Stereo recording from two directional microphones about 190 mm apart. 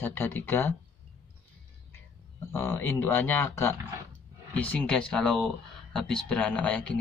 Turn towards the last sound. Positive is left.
turn(degrees=5)  # may be behind; listen again after turning